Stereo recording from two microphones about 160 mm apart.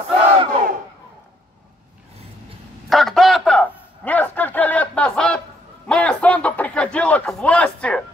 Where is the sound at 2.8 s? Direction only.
Centre (ahead or behind).